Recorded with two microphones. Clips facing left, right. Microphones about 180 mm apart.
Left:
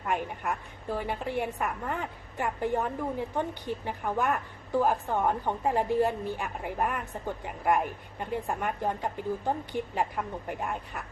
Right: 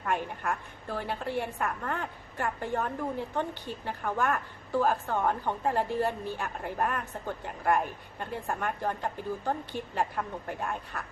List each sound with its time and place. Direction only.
0.0 s a woman's voice: 10° left (ahead or behind)